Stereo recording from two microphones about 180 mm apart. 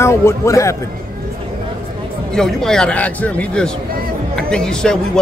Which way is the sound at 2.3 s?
Centre (ahead or behind).